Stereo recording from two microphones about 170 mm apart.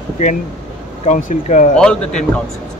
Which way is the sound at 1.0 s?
45° left (ahead or behind).